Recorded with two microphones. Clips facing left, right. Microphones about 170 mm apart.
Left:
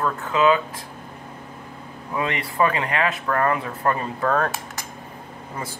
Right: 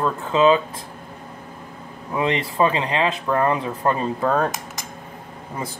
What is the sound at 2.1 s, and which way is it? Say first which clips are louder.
Speech: right 3 dB; 20° right (ahead or behind).